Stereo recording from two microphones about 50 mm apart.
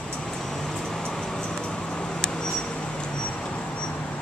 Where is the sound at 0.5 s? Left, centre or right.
Centre.